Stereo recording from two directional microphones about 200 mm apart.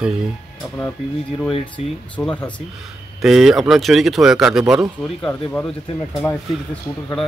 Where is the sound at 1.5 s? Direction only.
25° left (ahead or behind).